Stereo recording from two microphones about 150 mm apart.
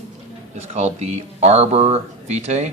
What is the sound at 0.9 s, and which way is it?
Speech, 45° right (ahead or behind).